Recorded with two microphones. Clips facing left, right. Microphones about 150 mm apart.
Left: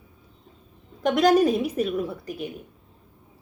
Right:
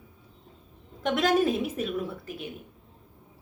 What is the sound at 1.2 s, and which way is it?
Speech, 40° left (ahead or behind).